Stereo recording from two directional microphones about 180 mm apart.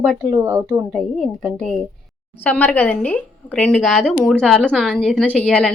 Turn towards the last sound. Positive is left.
turn(degrees=5)  # may be behind; listen again after turning